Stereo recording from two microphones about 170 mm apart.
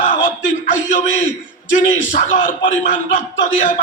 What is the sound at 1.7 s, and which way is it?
Speech, 50° left (ahead or behind).